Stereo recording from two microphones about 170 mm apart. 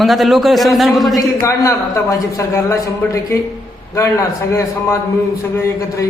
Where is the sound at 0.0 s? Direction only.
Centre (ahead or behind).